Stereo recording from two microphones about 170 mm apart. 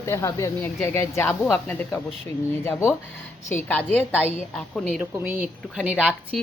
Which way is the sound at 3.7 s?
10° left (ahead or behind).